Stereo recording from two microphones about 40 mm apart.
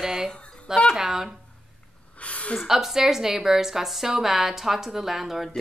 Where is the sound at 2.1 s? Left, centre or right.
Left.